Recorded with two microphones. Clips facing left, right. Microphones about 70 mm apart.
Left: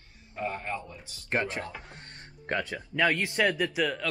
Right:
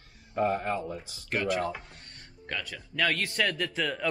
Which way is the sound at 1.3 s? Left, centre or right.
Left.